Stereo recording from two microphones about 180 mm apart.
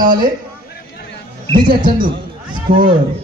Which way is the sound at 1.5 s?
25° right (ahead or behind).